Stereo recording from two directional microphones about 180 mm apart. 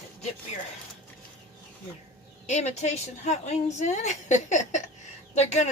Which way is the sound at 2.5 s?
40° left (ahead or behind).